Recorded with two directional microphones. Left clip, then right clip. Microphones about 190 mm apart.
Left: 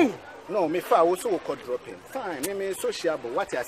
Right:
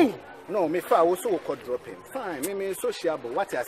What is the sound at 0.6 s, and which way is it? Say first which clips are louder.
Speech: even; 10° right (ahead or behind).